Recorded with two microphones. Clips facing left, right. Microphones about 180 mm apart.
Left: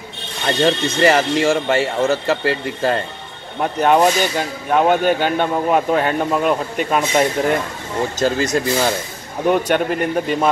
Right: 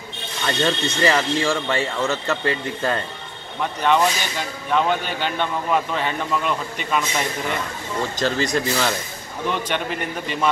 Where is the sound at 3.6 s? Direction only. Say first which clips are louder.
Left 5 dB; 45° left (ahead or behind).